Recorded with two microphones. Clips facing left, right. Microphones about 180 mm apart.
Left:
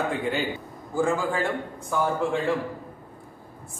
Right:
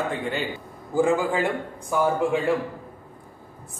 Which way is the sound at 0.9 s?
15° right (ahead or behind).